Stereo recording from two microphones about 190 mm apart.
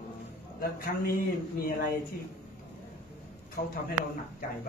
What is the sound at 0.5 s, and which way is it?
Speech, 50° left (ahead or behind).